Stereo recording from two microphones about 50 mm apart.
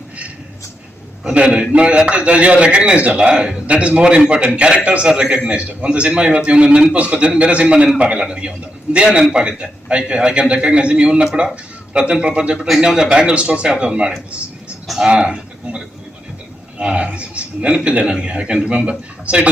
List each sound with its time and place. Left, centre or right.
1.3 s a man's voice: centre
12.5 s a man's voice: centre